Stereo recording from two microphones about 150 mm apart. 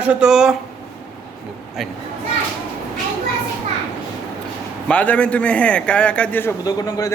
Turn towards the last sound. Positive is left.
turn(degrees=25)  # may be behind; listen again after turning